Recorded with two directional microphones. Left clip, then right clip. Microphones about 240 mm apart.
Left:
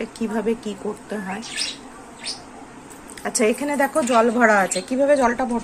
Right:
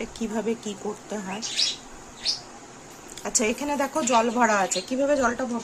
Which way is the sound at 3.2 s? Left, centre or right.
Centre.